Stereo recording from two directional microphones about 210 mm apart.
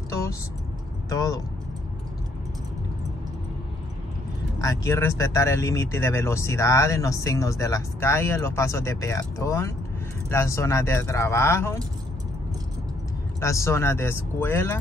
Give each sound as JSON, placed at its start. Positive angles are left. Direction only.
{"t": 0.1, "sound": "vehicle", "side_deg": 15}
{"t": 1.1, "sound": "speech", "side_deg": 15}
{"t": 4.6, "sound": "speech", "side_deg": 15}
{"t": 13.4, "sound": "speech", "side_deg": 15}